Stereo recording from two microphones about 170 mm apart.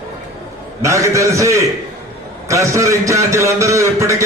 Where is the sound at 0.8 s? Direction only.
20° right (ahead or behind).